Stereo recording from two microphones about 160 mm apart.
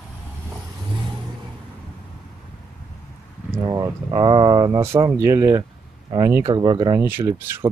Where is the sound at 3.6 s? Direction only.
25° right (ahead or behind).